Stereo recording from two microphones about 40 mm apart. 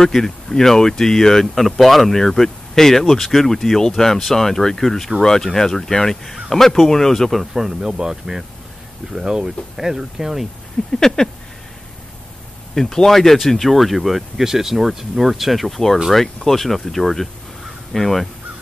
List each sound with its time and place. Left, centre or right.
0.0 s speech: centre
7.3 s speech: centre
10.9 s speech: centre
12.7 s speech: centre